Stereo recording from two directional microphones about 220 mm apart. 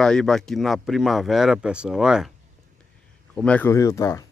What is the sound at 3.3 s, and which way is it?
Speech, 5° left (ahead or behind).